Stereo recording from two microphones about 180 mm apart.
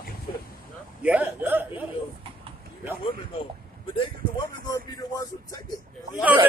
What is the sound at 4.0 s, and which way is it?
Speech, 20° left (ahead or behind).